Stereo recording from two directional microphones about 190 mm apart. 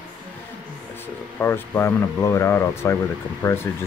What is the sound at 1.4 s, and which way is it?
Speech, 15° left (ahead or behind).